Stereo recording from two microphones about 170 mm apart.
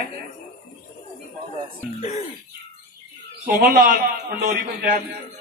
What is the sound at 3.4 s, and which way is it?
A man's voice, 55° right (ahead or behind).